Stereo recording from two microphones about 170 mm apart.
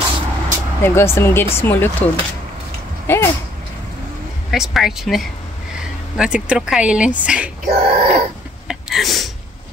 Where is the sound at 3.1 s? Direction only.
15° left (ahead or behind).